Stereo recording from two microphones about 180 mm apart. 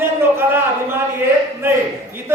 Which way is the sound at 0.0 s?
10° right (ahead or behind).